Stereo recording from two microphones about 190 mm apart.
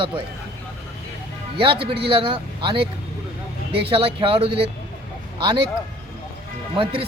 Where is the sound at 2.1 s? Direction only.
25° right (ahead or behind).